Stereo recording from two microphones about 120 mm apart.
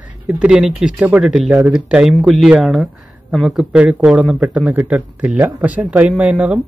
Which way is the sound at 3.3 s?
5° right (ahead or behind).